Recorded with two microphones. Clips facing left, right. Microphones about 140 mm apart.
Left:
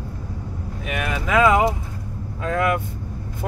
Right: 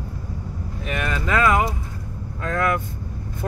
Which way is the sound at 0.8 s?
10° left (ahead or behind).